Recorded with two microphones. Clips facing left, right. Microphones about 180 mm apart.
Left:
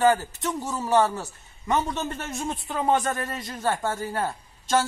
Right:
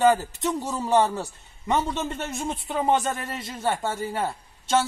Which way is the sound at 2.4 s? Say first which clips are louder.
Right 1 dB; 20° right (ahead or behind).